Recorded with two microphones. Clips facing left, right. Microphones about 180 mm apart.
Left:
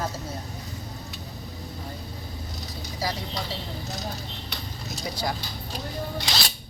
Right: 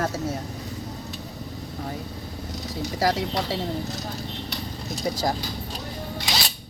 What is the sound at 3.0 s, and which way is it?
Speech, 80° right.